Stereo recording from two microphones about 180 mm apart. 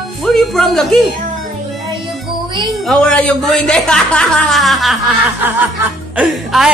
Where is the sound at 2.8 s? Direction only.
5° left (ahead or behind).